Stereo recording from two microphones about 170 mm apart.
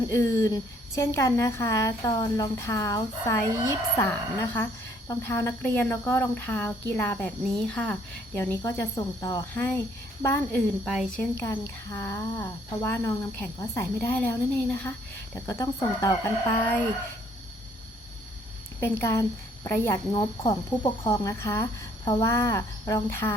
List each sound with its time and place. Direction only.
0.1 s a woman's voice: 20° left (ahead or behind)
10.8 s a woman's voice: centre (ahead or behind); by 16.1 s 20° left (ahead or behind)
18.8 s a woman's voice: 15° left (ahead or behind)